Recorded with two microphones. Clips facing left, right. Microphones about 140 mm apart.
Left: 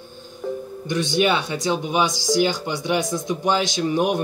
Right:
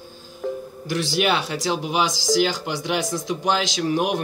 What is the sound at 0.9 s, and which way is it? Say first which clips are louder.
Speech: left 2 dB; 5° right (ahead or behind).